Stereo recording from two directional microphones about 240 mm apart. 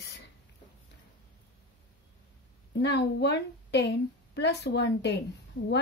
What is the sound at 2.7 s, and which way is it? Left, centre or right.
A woman's voice, left.